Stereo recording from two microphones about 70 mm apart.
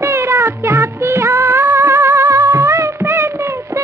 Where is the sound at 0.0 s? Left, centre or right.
Right.